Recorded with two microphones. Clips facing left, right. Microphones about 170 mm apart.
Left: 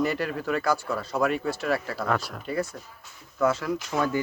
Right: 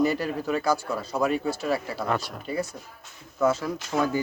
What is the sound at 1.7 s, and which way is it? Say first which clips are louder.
Speech: left 1 dB; 20° right (ahead or behind).